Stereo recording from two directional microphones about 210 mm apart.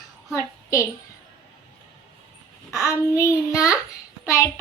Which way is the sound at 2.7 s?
15° left (ahead or behind).